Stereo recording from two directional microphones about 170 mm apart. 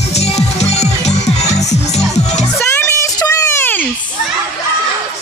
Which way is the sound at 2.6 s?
15° left (ahead or behind).